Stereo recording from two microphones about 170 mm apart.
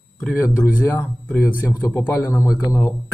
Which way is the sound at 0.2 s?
Centre (ahead or behind).